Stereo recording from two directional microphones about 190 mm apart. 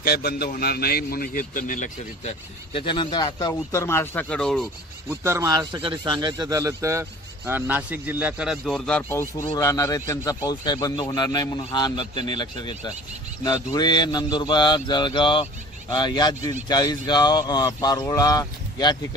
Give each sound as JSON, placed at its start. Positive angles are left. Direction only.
{"t": 0.0, "sound": "a man's voice", "side_deg": 55}
{"t": 2.7, "sound": "speech", "side_deg": 25}
{"t": 5.1, "sound": "a man's voice", "side_deg": -15}
{"t": 9.5, "sound": "a man's voice", "side_deg": 15}